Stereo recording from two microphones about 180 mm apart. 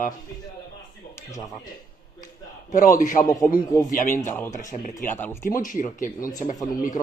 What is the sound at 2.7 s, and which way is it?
Speech, 45° left (ahead or behind).